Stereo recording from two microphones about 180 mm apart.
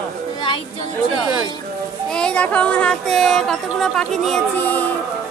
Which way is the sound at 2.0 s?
5° left (ahead or behind).